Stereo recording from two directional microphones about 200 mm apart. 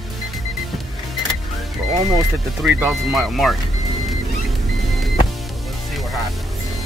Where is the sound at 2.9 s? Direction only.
Centre (ahead or behind).